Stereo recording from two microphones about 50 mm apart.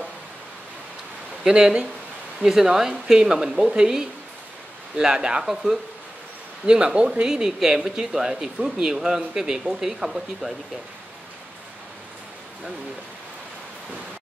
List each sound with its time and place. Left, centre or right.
1.4 s speech: centre
5.4 s speech: centre